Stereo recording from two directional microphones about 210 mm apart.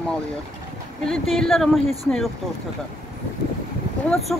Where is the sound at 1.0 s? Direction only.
Centre (ahead or behind).